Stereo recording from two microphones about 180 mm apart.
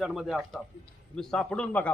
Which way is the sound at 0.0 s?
Centre (ahead or behind).